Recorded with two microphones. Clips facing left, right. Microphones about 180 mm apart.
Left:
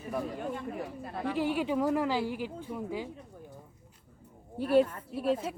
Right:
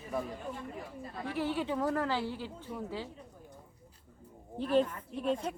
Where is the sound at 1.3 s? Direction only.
15° left (ahead or behind).